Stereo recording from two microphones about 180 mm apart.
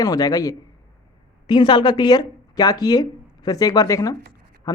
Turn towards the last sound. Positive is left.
turn(degrees=20)  # may be behind; listen again after turning